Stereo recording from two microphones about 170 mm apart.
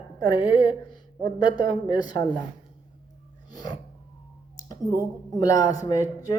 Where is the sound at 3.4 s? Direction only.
25° left (ahead or behind).